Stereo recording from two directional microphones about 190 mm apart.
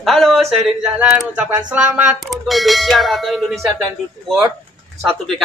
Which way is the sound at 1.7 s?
5° right (ahead or behind).